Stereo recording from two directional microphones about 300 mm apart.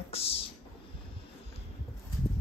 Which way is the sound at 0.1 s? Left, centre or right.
Centre.